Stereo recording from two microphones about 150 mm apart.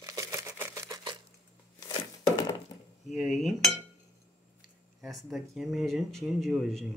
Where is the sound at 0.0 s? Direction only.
20° right (ahead or behind).